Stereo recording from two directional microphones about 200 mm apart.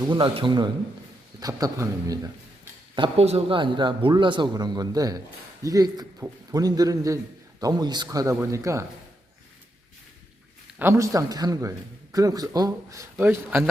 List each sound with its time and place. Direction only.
0.0 s a man's voice: 25° right (ahead or behind)
10.8 s a man's voice: 15° right (ahead or behind)